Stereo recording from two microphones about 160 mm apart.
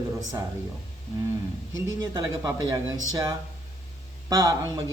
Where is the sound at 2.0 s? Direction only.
25° right (ahead or behind).